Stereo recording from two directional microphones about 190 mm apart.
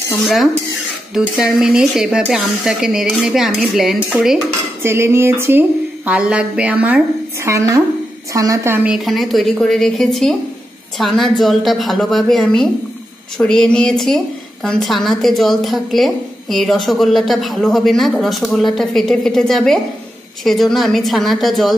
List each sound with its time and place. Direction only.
1.1 s a woman's voice: 5° right (ahead or behind)
4.8 s a woman's voice: 15° right (ahead or behind)